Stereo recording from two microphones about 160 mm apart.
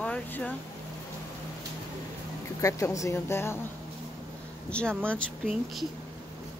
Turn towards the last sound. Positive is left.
turn(degrees=0)  # may be behind; listen again after turning